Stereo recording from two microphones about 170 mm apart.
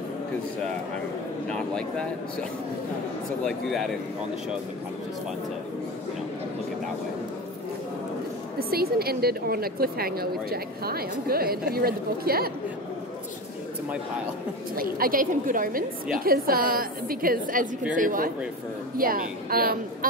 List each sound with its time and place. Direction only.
1.5 s speech: 5° left (ahead or behind)
3.4 s speech: centre (ahead or behind)
8.5 s a woman's voice: 65° right (ahead or behind)
14.8 s a woman's voice: 60° right (ahead or behind)